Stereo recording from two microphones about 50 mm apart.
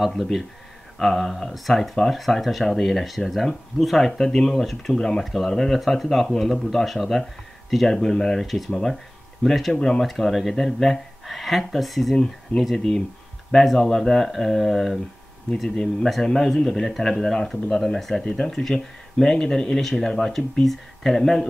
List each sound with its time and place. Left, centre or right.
0.9 s speech: centre
12.7 s speech: centre
15.7 s speech: centre